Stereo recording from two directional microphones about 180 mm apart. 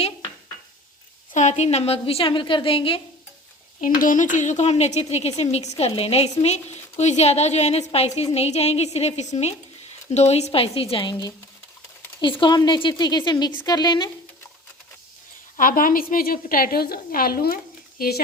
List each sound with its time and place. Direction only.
1.3 s a woman's voice: 40° left (ahead or behind)
3.8 s a woman's voice: 50° left (ahead or behind); by 14.1 s 25° left (ahead or behind)
15.5 s a woman's voice: 50° left (ahead or behind)